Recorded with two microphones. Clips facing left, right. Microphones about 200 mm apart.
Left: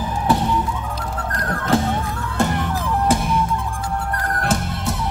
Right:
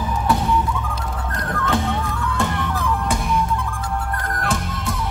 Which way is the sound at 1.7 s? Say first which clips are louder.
Left 4 dB; 40° left (ahead or behind).